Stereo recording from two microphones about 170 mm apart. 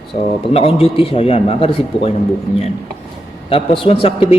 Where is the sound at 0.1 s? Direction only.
45° left (ahead or behind).